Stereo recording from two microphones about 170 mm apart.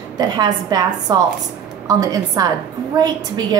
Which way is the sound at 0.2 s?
25° right (ahead or behind).